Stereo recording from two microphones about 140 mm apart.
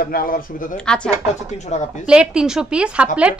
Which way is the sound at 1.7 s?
55° left (ahead or behind).